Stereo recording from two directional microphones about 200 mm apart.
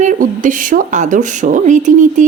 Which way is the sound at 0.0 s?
40° right (ahead or behind).